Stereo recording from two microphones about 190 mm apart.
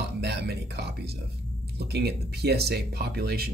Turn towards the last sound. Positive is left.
turn(degrees=-55)  # may be behind; listen again after turning